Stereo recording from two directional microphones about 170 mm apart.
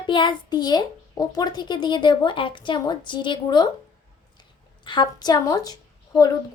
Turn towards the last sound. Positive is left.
turn(degrees=20)  # may be behind; listen again after turning